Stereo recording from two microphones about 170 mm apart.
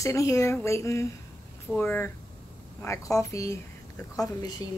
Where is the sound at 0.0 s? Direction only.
20° left (ahead or behind).